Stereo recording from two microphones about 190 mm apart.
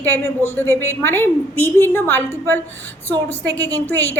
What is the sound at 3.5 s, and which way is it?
Speech, 70° left (ahead or behind).